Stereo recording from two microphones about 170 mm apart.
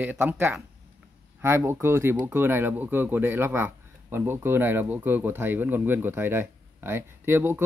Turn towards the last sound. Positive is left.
turn(degrees=-15)  # may be behind; listen again after turning